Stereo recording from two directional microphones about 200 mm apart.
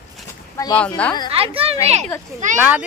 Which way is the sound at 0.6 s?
15° left (ahead or behind).